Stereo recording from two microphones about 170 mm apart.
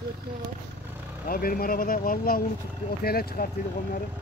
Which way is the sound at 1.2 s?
60° left (ahead or behind).